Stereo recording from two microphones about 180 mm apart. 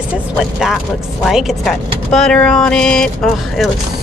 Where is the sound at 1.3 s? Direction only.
Centre (ahead or behind).